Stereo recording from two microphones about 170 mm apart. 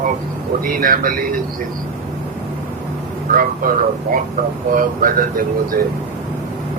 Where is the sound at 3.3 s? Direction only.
55° right (ahead or behind).